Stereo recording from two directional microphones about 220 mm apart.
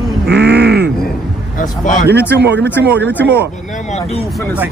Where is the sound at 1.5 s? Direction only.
35° left (ahead or behind).